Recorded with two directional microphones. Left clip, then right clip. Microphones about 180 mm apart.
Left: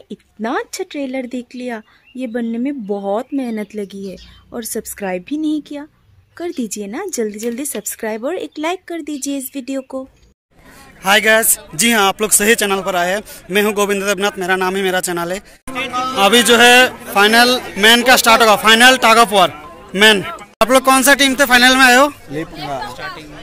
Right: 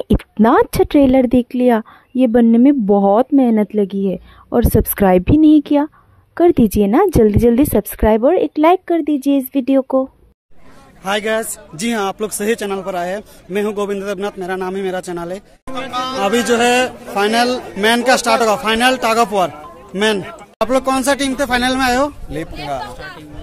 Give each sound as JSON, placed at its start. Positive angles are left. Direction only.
{"t": 0.1, "sound": "speech", "side_deg": -50}
{"t": 8.2, "sound": "speech", "side_deg": -30}
{"t": 11.0, "sound": "a man's voice", "side_deg": 5}
{"t": 22.3, "sound": "speech", "side_deg": -15}